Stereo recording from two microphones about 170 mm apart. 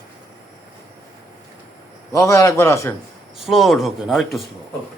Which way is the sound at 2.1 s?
20° left (ahead or behind).